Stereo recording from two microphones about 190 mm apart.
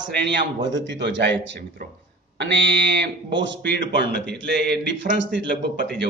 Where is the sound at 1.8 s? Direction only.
55° right (ahead or behind).